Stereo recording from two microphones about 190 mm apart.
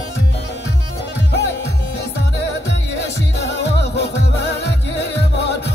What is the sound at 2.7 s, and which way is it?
Music, 60° left (ahead or behind).